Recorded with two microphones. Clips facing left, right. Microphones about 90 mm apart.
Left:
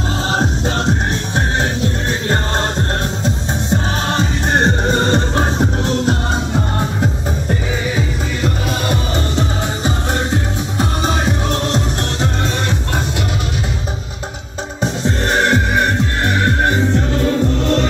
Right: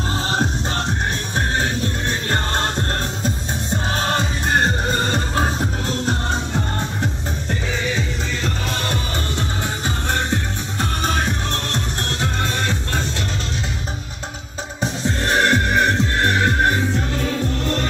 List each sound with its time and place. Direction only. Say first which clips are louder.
0.3 s music: left 5 dB; 20° left (ahead or behind)
4.1 s music: left 4 dB; 25° left (ahead or behind)
6.0 s music: left 4 dB; 15° left (ahead or behind)
15.3 s music: left 1 dB; 5° left (ahead or behind)